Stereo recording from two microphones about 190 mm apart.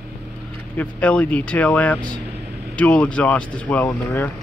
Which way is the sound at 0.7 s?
5° left (ahead or behind).